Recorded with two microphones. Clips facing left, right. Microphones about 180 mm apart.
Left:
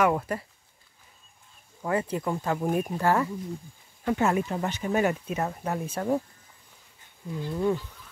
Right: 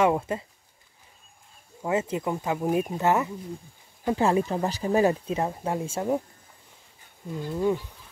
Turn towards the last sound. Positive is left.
turn(degrees=-15)  # may be behind; listen again after turning